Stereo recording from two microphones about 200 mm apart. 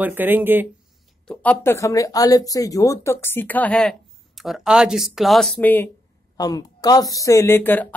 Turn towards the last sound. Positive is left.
turn(degrees=10)  # may be behind; listen again after turning